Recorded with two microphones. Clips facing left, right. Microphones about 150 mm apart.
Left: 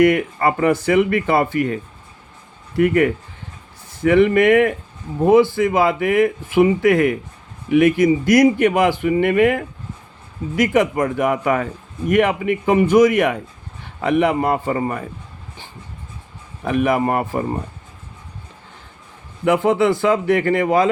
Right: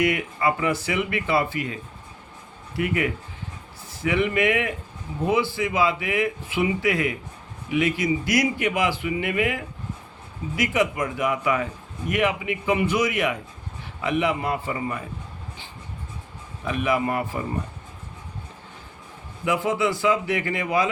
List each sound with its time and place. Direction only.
0.0 s a man's voice: 55° left (ahead or behind)
16.6 s a man's voice: 55° left (ahead or behind)
19.5 s a man's voice: 55° left (ahead or behind)